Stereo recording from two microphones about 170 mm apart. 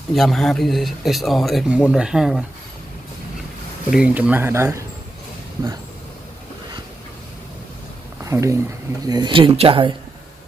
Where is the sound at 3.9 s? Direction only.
5° right (ahead or behind).